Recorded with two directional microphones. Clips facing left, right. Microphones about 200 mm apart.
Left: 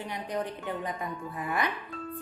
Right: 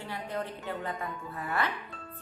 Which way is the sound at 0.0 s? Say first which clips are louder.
Left 2 dB; 15° left (ahead or behind).